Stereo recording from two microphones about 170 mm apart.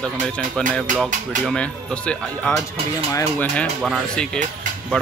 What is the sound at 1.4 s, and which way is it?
Speech, 5° left (ahead or behind).